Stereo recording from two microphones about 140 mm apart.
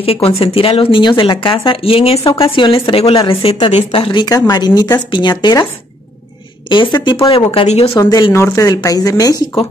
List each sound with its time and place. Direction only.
0.0 s a woman's voice: 45° left (ahead or behind); by 5.7 s 30° left (ahead or behind)
6.7 s speech: 35° left (ahead or behind)
8.3 s a woman's voice: 20° left (ahead or behind)